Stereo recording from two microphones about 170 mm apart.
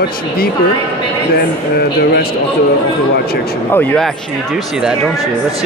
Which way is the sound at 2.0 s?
65° left (ahead or behind).